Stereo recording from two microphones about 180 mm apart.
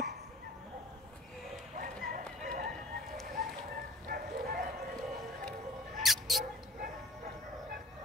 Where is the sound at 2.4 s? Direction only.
50° right (ahead or behind).